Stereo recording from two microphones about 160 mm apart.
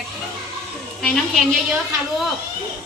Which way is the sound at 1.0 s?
Centre (ahead or behind).